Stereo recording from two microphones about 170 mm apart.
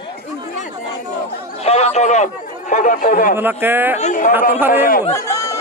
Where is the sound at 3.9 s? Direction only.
45° left (ahead or behind).